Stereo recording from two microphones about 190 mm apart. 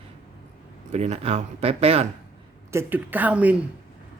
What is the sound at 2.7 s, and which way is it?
Speech, 10° right (ahead or behind).